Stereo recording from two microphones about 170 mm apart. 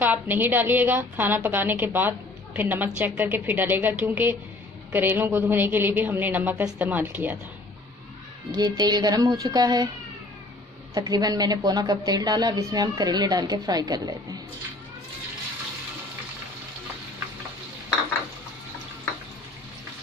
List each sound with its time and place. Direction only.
0.0 s a woman's voice: 10° right (ahead or behind)
8.5 s a woman's voice: 25° right (ahead or behind)
11.0 s a woman's voice: 20° right (ahead or behind)